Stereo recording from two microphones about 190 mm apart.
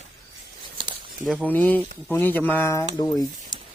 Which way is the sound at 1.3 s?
5° left (ahead or behind).